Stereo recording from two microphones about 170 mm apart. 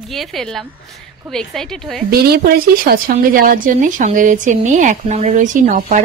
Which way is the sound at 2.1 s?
65° right (ahead or behind).